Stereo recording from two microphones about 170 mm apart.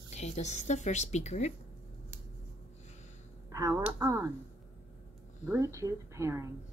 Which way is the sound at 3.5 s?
20° right (ahead or behind).